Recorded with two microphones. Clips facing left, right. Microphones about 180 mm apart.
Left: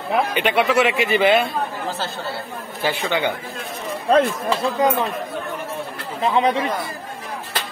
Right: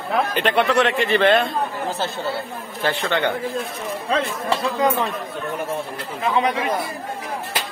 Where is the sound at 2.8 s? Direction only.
5° left (ahead or behind).